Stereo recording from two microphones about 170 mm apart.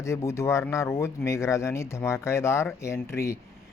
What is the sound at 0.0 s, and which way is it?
Speech, 15° left (ahead or behind).